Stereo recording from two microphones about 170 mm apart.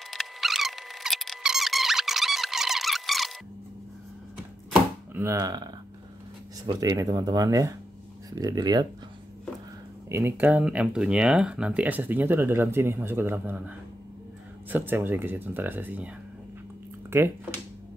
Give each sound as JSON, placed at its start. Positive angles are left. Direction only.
{"t": 0.1, "sound": "squeak", "side_deg": 0}
{"t": 5.1, "sound": "speech", "side_deg": -15}
{"t": 10.0, "sound": "speech", "side_deg": -15}